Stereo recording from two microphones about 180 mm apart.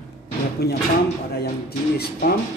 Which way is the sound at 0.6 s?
60° left (ahead or behind).